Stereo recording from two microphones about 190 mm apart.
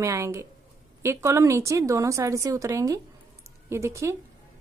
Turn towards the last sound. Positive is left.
turn(degrees=-15)  # may be behind; listen again after turning